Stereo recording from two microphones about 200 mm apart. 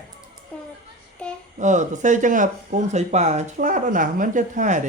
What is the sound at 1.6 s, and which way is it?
Speech, 35° right (ahead or behind).